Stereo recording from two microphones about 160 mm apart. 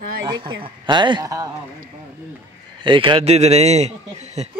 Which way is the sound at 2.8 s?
30° right (ahead or behind).